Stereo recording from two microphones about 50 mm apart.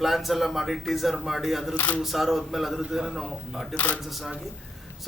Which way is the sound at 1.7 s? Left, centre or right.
Left.